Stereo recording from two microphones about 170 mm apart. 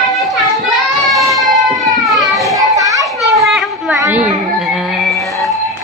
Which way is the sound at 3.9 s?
15° right (ahead or behind).